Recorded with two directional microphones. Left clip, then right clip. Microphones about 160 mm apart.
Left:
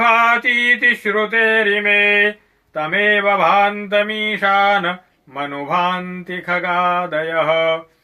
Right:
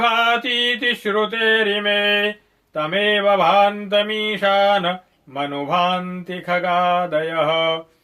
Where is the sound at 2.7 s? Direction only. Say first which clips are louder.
Left 3 dB; 50° right (ahead or behind).